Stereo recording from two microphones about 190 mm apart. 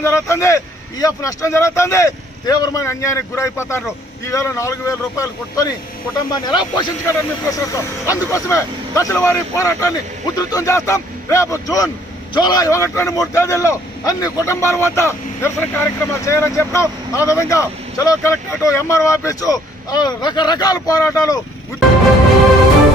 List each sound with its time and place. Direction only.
0.0 s speech: 15° left (ahead or behind)